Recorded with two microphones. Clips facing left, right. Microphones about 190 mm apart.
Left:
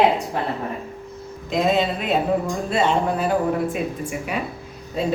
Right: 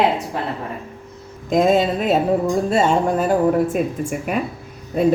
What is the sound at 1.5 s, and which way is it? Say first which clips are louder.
A woman's voice: right 4 dB; 45° right (ahead or behind).